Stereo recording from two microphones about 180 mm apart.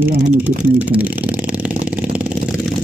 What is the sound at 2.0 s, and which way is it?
Vehicle, 5° right (ahead or behind).